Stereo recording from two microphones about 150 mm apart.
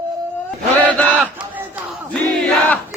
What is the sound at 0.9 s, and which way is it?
Battle cry, 10° left (ahead or behind).